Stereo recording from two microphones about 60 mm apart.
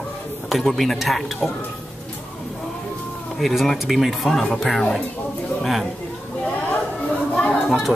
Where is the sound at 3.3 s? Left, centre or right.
Centre.